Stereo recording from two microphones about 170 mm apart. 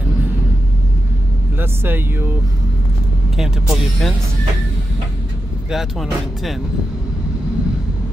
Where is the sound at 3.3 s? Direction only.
Centre (ahead or behind).